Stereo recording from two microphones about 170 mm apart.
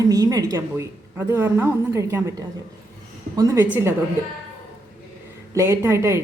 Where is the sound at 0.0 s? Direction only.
20° right (ahead or behind).